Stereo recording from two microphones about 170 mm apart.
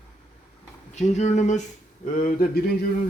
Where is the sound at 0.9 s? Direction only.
40° left (ahead or behind); by 2.6 s 60° left (ahead or behind).